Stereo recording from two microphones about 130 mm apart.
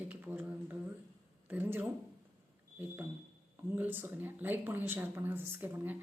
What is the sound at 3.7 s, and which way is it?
Speech, 15° right (ahead or behind).